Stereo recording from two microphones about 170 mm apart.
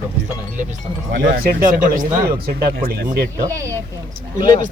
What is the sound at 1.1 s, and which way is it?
Speech, 60° right (ahead or behind).